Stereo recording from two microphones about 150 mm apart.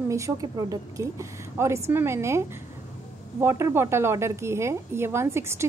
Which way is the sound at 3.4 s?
15° right (ahead or behind).